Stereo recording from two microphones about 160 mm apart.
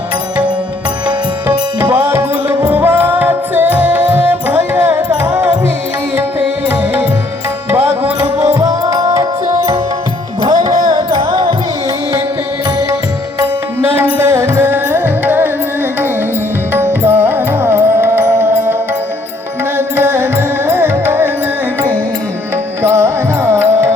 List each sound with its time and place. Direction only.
1.0 s music: 10° right (ahead or behind)
6.7 s music: 15° right (ahead or behind)
10.4 s music: 25° right (ahead or behind)
13.8 s music: 15° right (ahead or behind)
16.7 s music: 15° right (ahead or behind)
22.8 s music: 15° right (ahead or behind)